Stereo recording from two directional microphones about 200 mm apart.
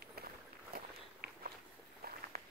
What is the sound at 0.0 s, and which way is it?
Walk, 50° right (ahead or behind).